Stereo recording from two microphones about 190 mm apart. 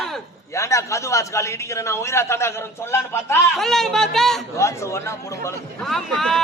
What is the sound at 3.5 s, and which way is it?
Speech, centre (ahead or behind).